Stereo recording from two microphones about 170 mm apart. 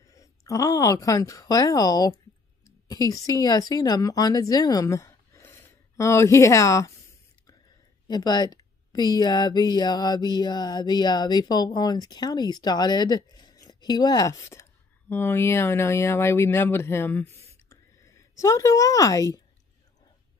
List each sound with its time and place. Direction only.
0.0 s speech: 20° left (ahead or behind)
8.1 s speech: 25° left (ahead or behind)